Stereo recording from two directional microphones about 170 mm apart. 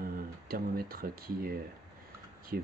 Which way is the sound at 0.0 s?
55° right (ahead or behind).